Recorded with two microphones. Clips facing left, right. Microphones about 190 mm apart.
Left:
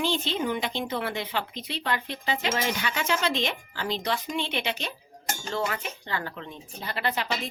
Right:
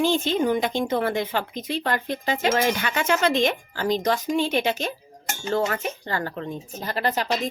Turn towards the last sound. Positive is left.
turn(degrees=-40)  # may be behind; listen again after turning